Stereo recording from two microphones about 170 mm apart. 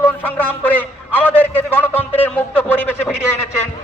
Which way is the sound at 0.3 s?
10° left (ahead or behind).